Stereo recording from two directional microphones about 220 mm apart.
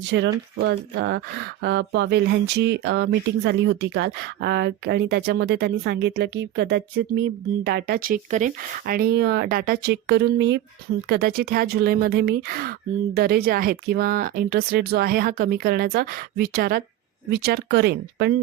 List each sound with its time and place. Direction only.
0.1 s speech: 55° right (ahead or behind)